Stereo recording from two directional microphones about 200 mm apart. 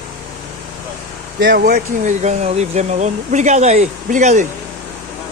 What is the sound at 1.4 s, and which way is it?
Speech, 55° right (ahead or behind).